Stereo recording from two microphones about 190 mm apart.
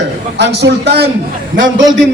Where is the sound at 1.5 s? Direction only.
90° right.